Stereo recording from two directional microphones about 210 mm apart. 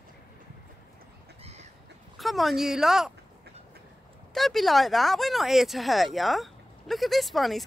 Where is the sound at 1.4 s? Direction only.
30° right (ahead or behind).